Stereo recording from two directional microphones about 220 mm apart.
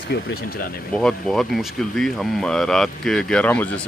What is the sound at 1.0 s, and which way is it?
Speech, 5° left (ahead or behind).